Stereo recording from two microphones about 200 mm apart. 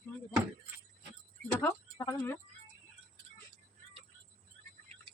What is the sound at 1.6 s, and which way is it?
Speech, 10° left (ahead or behind).